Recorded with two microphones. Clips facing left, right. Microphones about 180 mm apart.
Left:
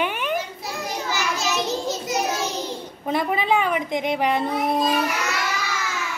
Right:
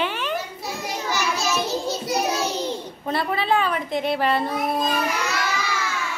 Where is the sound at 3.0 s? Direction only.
15° left (ahead or behind).